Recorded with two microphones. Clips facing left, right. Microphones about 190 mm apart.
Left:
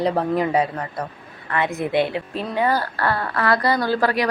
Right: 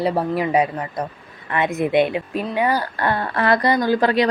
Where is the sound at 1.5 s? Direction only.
20° right (ahead or behind).